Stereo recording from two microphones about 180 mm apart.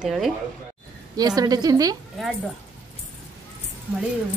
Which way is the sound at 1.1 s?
20° right (ahead or behind).